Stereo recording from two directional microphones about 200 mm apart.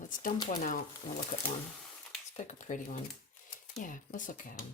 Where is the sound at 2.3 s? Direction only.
40° left (ahead or behind).